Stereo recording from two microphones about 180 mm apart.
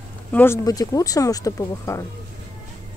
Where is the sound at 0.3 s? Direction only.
10° left (ahead or behind).